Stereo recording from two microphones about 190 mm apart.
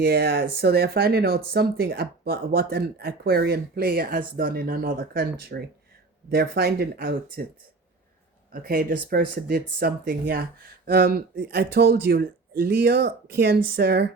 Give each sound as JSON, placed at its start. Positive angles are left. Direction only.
{"t": 0.0, "sound": "speech", "side_deg": -55}
{"t": 8.5, "sound": "speech", "side_deg": -50}